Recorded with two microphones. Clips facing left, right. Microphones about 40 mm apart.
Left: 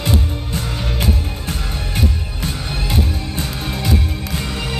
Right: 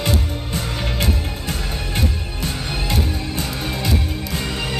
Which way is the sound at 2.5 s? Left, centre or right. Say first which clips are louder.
Left 1 dB; centre.